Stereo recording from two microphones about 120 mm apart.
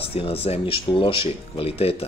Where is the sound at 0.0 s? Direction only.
50° left (ahead or behind).